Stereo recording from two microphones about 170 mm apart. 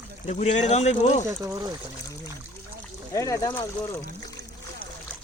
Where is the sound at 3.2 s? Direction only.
20° left (ahead or behind).